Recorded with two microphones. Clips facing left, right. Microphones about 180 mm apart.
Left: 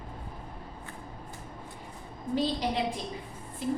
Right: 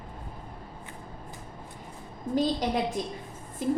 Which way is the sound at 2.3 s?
45° right (ahead or behind).